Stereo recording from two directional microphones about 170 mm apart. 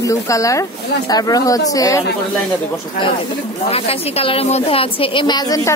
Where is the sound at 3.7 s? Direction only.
35° left (ahead or behind).